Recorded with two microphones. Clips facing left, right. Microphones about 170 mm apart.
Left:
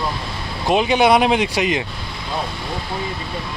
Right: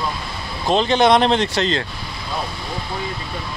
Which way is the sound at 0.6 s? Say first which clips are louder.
Even; 10° left (ahead or behind).